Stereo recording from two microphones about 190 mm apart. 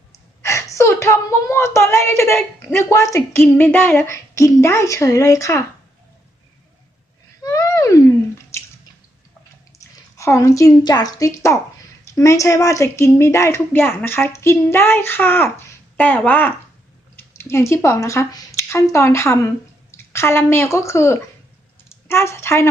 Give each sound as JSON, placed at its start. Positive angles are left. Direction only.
{"t": 0.4, "sound": "a woman's voice", "side_deg": 15}
{"t": 7.4, "sound": "a sound", "side_deg": 15}
{"t": 9.9, "sound": "a woman's voice", "side_deg": 15}